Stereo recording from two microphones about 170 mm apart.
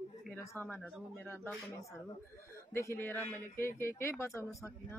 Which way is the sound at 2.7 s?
15° left (ahead or behind).